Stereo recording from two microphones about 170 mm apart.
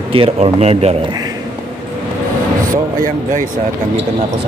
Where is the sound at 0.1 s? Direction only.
35° right (ahead or behind).